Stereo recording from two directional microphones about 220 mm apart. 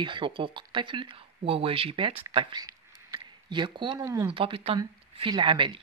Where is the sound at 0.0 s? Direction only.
20° right (ahead or behind).